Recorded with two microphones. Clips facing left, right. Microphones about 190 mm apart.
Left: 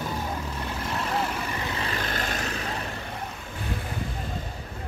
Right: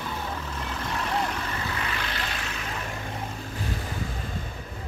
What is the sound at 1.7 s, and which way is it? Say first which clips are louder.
Vehicle: left 2 dB; 30° left (ahead or behind).